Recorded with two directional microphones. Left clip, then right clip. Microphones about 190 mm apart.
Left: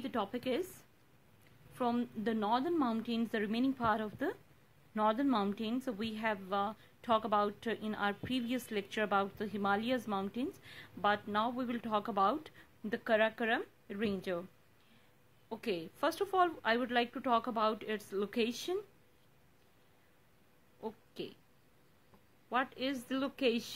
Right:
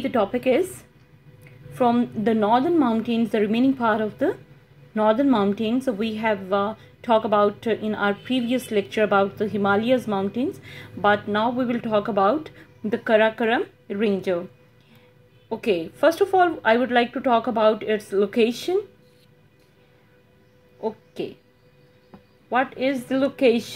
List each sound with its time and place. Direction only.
0.0 s a woman's voice: 35° left (ahead or behind)
1.8 s a woman's voice: 40° left (ahead or behind)
15.5 s a woman's voice: 40° left (ahead or behind)
20.8 s a sound: 40° left (ahead or behind)
22.5 s a woman's voice: 40° left (ahead or behind)